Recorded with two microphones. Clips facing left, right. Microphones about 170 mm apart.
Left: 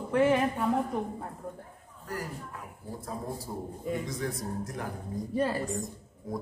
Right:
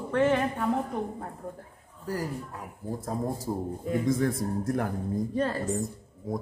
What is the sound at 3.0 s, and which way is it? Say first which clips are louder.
A man's voice: right 6 dB; 45° right (ahead or behind).